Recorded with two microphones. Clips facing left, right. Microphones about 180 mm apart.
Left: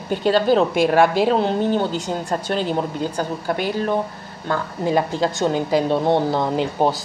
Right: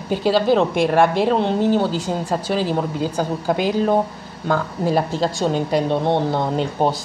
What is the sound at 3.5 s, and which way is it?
Speech, 15° right (ahead or behind).